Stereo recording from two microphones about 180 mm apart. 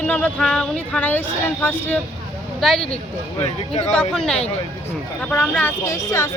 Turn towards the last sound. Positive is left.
turn(degrees=15)  # may be behind; listen again after turning